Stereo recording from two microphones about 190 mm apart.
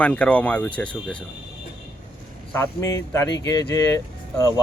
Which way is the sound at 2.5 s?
15° left (ahead or behind).